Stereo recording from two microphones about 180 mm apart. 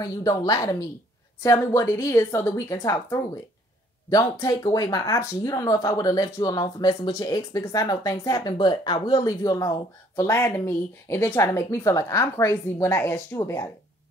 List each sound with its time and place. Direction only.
0.0 s speech: 20° left (ahead or behind)